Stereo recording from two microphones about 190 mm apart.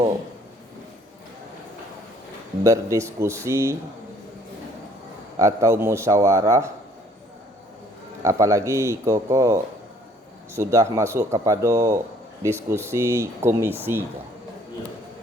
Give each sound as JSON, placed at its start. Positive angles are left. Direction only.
{"t": 2.6, "sound": "speech", "side_deg": -15}
{"t": 5.4, "sound": "speech", "side_deg": -15}
{"t": 8.2, "sound": "speech", "side_deg": -15}